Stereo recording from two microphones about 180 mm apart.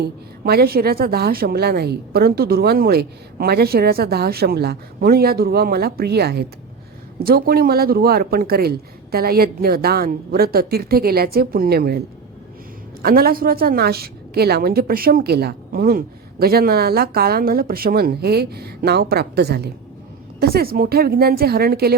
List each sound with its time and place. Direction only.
0.0 s a woman's voice: 60° right (ahead or behind)
13.0 s a woman's voice: 55° right (ahead or behind)